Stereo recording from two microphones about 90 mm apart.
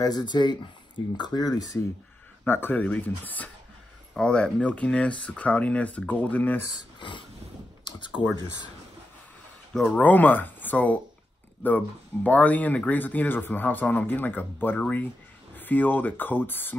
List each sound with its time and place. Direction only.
0.0 s speech: 50° left (ahead or behind)
2.4 s speech: 25° left (ahead or behind)
7.0 s a sound: 65° left (ahead or behind)
7.9 s computer keyboard: 60° left (ahead or behind)
9.9 s speech: 20° left (ahead or behind)